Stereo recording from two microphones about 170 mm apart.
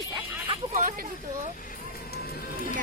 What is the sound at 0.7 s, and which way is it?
Speech, 50° right (ahead or behind).